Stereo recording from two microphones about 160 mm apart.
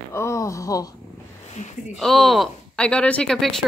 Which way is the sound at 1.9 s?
Centre (ahead or behind).